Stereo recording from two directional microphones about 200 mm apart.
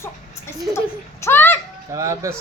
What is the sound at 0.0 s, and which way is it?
Speech, 15° left (ahead or behind).